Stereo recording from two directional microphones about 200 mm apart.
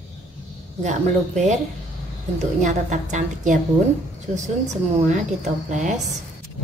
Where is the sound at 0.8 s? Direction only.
35° right (ahead or behind).